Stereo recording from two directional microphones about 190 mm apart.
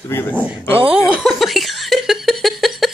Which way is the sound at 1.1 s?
Centre (ahead or behind).